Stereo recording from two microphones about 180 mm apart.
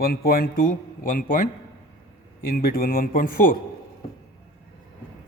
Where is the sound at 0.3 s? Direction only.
55° left (ahead or behind).